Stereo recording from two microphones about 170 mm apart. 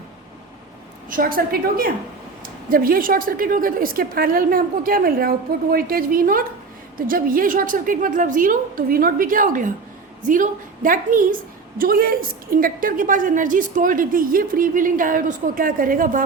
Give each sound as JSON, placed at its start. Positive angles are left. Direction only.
{"t": 1.1, "sound": "a woman's voice", "side_deg": -55}